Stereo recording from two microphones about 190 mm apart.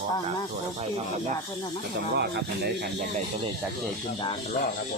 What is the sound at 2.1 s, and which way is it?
Speech, 60° right (ahead or behind).